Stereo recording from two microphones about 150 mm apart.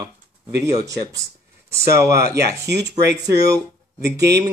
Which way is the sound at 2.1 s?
90° right.